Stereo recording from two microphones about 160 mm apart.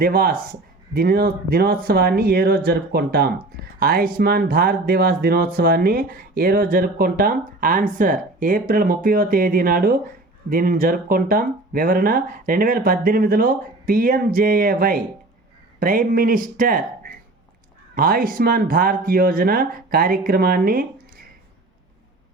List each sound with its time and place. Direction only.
0.0 s speech: 65° right (ahead or behind)